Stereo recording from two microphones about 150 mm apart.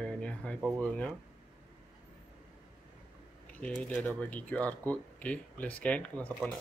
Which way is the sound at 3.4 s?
10° left (ahead or behind).